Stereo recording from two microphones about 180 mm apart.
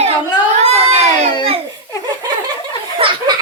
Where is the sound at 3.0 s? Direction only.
25° right (ahead or behind).